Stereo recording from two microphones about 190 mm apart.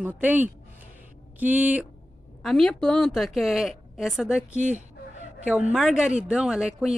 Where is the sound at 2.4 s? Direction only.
Centre (ahead or behind).